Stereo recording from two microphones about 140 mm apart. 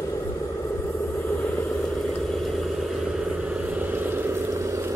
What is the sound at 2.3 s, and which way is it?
Vehicle, centre (ahead or behind).